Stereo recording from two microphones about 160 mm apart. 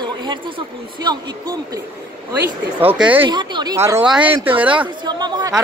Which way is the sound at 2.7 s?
10° right (ahead or behind).